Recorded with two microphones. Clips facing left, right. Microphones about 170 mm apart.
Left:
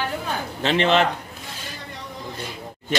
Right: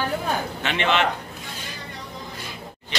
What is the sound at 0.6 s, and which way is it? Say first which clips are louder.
Speech: left 6 dB; 35° left (ahead or behind).